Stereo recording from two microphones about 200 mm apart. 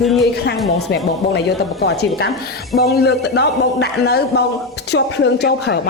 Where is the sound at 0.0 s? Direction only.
Centre (ahead or behind).